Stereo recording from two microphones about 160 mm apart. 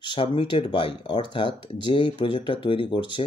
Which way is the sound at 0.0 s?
30° left (ahead or behind).